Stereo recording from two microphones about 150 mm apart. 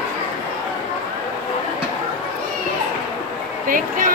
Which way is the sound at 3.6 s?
65° right (ahead or behind).